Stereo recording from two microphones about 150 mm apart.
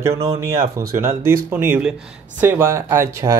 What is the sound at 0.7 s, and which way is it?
Speech, 20° right (ahead or behind).